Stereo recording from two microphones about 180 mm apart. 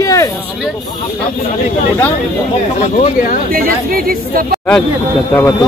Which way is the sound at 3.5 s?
55° right (ahead or behind).